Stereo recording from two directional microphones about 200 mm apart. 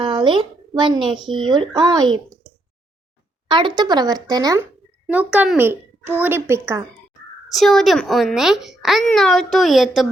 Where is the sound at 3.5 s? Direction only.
25° right (ahead or behind).